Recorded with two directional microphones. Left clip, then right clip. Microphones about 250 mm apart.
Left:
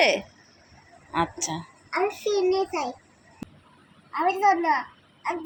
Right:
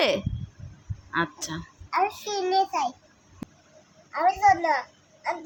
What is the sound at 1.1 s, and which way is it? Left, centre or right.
A child's voice, centre.